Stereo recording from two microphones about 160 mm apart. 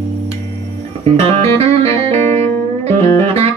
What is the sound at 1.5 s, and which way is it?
Saxophone, 40° right (ahead or behind).